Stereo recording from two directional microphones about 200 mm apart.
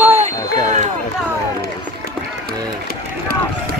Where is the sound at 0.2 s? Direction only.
35° right (ahead or behind).